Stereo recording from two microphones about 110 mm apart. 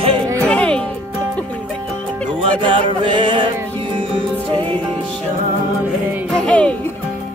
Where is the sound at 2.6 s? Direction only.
50° right (ahead or behind).